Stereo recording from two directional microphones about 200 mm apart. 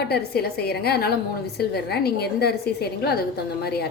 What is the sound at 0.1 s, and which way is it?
A woman's voice, 55° left (ahead or behind).